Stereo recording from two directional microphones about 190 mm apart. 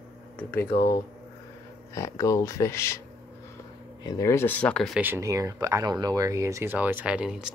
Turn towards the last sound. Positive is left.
turn(degrees=-5)  # may be behind; listen again after turning